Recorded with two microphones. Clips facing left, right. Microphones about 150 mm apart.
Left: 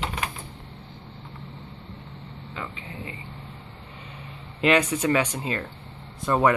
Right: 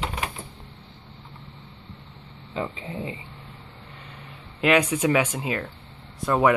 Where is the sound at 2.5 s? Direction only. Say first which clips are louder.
Right 7 dB; 30° right (ahead or behind).